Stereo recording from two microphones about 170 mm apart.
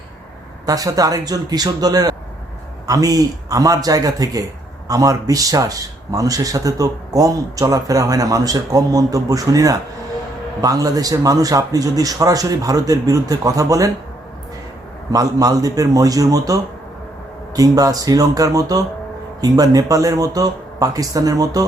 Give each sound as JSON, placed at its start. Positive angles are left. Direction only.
{"t": 0.6, "sound": "speech", "side_deg": -20}
{"t": 15.1, "sound": "speech", "side_deg": -20}